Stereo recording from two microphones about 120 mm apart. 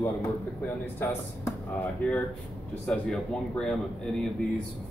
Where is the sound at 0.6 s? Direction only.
20° left (ahead or behind).